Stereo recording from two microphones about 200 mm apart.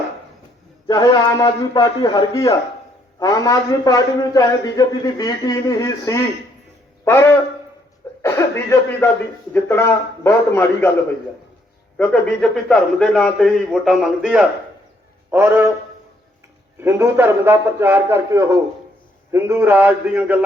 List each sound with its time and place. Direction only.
0.9 s a man's voice: 20° left (ahead or behind)
11.9 s a man's voice: 5° left (ahead or behind)
16.8 s a man's voice: 10° right (ahead or behind)